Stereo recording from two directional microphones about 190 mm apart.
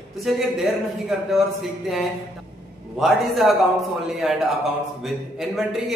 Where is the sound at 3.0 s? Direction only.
Centre (ahead or behind).